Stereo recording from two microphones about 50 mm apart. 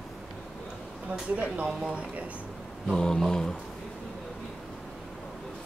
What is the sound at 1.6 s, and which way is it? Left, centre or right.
Speech, right.